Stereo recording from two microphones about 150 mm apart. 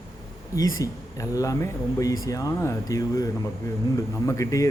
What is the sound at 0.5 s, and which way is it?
Speech, 25° left (ahead or behind).